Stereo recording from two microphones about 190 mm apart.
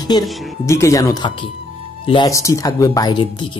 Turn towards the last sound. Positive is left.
turn(degrees=25)  # may be behind; listen again after turning